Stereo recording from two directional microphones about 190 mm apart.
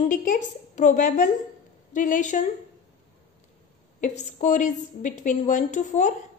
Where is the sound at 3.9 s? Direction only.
40° left (ahead or behind).